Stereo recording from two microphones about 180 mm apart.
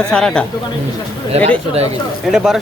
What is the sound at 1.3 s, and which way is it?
Speech, 35° right (ahead or behind).